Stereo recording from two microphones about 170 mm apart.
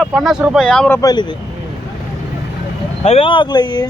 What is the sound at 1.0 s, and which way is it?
Speech, 20° left (ahead or behind).